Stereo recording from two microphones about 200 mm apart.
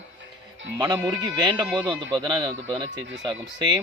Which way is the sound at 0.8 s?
20° right (ahead or behind).